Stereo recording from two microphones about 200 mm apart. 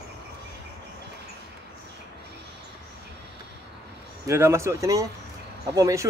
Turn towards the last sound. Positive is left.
turn(degrees=-15)  # may be behind; listen again after turning